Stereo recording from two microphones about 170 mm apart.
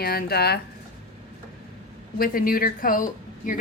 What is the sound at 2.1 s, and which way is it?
A woman's voice, 55° left (ahead or behind).